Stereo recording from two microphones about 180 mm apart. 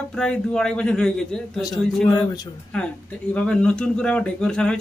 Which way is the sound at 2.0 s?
25° left (ahead or behind).